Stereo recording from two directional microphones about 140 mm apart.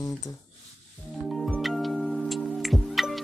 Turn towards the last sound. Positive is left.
turn(degrees=0)  # may be behind; listen again after turning